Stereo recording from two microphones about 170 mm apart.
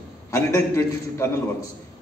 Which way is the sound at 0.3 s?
15° left (ahead or behind).